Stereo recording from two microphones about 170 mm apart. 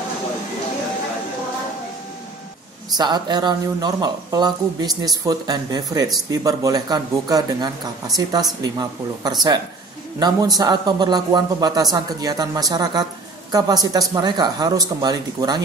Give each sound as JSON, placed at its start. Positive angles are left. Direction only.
{"t": 3.0, "sound": "speech", "side_deg": -25}
{"t": 9.2, "sound": "speech", "side_deg": -25}